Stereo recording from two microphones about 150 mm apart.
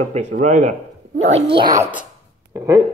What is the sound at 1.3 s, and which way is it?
Speech, 40° right (ahead or behind).